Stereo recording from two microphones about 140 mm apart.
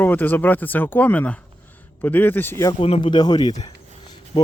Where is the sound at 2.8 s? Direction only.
40° left (ahead or behind).